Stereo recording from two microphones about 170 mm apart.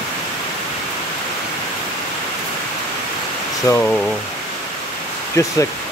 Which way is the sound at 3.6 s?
10° left (ahead or behind).